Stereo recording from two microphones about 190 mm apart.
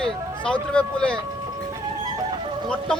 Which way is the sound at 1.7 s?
20° right (ahead or behind).